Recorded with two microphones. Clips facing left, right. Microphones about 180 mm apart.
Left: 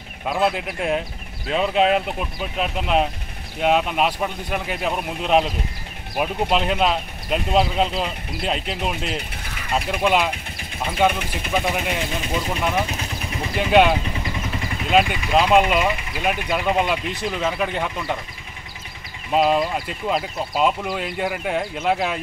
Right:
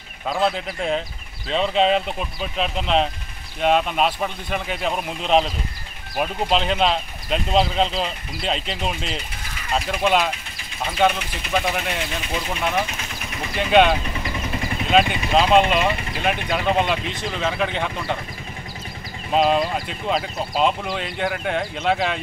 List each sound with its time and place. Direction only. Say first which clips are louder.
0.3 s speech: left 1 dB; 5° left (ahead or behind)
11.1 s speech: left 3 dB; 50° left (ahead or behind)
11.5 s speech: even; 5° left (ahead or behind)
13.6 s speech: even; 5° left (ahead or behind)
19.3 s speech: even; 5° left (ahead or behind)